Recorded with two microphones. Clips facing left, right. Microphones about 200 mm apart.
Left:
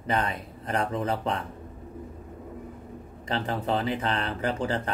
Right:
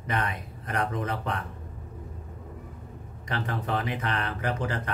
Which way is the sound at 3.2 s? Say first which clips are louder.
Left 3 dB; 30° left (ahead or behind).